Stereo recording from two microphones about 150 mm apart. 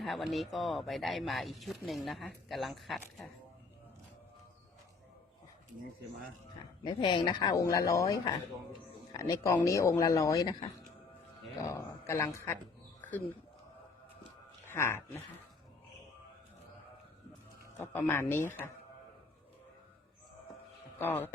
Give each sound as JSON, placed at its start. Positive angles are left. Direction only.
{"t": 0.0, "sound": "speech", "side_deg": 0}
{"t": 6.8, "sound": "speech", "side_deg": 30}
{"t": 11.7, "sound": "a woman's voice", "side_deg": 20}
{"t": 13.0, "sound": "a sound", "side_deg": 10}
{"t": 14.7, "sound": "speech", "side_deg": 15}
{"t": 17.7, "sound": "speech", "side_deg": 15}
{"t": 21.0, "sound": "speech", "side_deg": 15}